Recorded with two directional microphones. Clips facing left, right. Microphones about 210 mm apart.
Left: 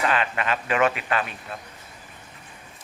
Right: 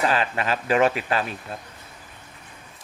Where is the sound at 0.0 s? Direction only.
35° right (ahead or behind).